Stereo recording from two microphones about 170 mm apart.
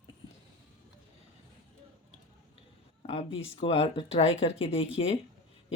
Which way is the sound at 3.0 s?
40° left (ahead or behind).